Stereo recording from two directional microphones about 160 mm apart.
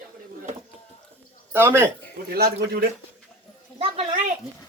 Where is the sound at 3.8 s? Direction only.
35° right (ahead or behind).